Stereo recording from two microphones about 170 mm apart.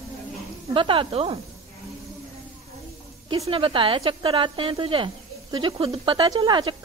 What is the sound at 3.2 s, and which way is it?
A woman's voice, 35° right (ahead or behind).